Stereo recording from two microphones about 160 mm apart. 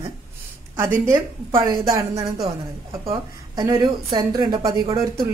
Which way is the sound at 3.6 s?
25° right (ahead or behind).